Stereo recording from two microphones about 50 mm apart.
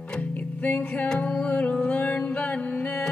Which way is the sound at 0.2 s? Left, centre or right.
Left.